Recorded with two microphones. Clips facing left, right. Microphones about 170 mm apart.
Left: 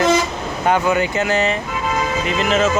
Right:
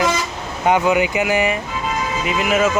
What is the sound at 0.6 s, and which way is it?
Speech, 15° right (ahead or behind).